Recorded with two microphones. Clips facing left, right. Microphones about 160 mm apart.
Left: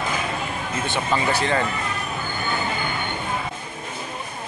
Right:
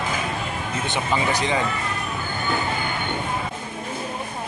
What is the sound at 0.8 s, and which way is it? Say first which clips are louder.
Speech: left 1 dB; 15° right (ahead or behind).